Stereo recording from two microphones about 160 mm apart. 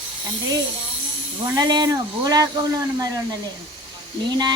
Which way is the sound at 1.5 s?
25° right (ahead or behind).